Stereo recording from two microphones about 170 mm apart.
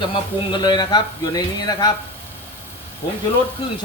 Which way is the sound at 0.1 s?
25° left (ahead or behind).